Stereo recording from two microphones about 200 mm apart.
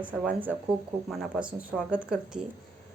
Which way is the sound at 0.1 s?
5° right (ahead or behind).